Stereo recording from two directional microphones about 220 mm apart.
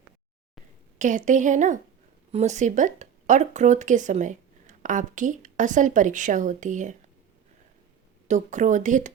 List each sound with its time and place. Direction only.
0.9 s speech: 35° right (ahead or behind)
8.3 s speech: 35° right (ahead or behind)